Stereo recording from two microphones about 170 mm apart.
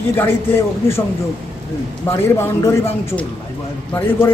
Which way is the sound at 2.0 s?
15° left (ahead or behind).